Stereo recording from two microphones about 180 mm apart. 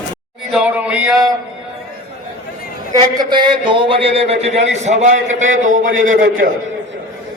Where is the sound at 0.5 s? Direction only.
5° right (ahead or behind).